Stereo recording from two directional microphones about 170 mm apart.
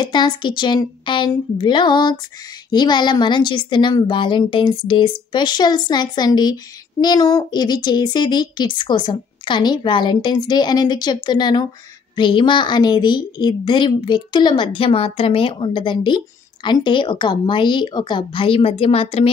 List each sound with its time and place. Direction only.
0.0 s a woman's voice: 25° left (ahead or behind)